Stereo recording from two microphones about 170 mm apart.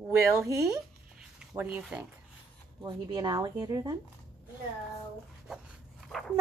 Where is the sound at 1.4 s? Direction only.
5° right (ahead or behind).